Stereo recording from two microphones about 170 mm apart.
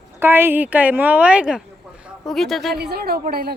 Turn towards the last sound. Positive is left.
turn(degrees=-65)  # may be behind; listen again after turning